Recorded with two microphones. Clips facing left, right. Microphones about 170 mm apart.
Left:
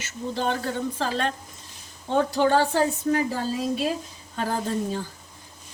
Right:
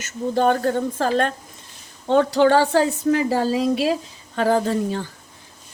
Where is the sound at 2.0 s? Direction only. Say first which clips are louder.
Right 6 dB; 85° right.